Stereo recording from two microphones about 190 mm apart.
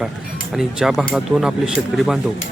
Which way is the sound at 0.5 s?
Centre (ahead or behind).